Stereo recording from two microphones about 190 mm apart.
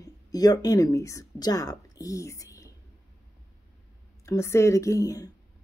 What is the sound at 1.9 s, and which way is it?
Whispering, 15° left (ahead or behind).